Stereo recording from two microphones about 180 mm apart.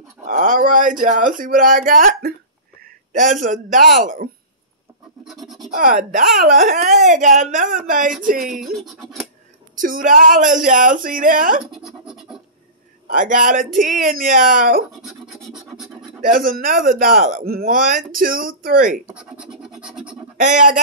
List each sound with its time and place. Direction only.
0.3 s a man's voice: 45° right (ahead or behind)
5.2 s scratch: centre (ahead or behind)
5.7 s speech: 50° right (ahead or behind)
8.7 s scratch: centre (ahead or behind)
9.8 s speech: 50° right (ahead or behind)
11.6 s scratch: 5° right (ahead or behind)
13.1 s speech: 45° right (ahead or behind)
15.0 s scratch: centre (ahead or behind)
16.2 s speech: 50° right (ahead or behind)
19.0 s scratch: 5° right (ahead or behind)
20.3 s speech: 45° right (ahead or behind)